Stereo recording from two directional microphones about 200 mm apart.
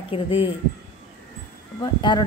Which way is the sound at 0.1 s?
30° left (ahead or behind).